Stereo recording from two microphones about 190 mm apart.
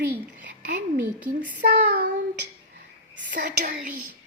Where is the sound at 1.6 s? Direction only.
55° right (ahead or behind).